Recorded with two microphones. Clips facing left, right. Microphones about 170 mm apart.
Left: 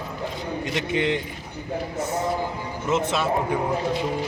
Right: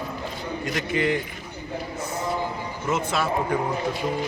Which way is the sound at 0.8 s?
20° left (ahead or behind).